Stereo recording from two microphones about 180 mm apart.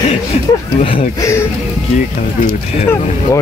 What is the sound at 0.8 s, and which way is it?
Speech, 30° left (ahead or behind).